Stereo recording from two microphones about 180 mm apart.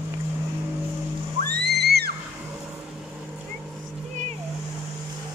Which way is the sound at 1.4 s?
65° right (ahead or behind).